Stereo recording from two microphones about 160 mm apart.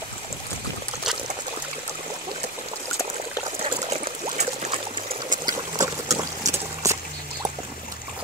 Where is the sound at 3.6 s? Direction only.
40° right (ahead or behind); by 7.0 s 20° right (ahead or behind).